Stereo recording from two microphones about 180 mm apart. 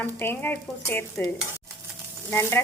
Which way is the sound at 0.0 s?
10° left (ahead or behind).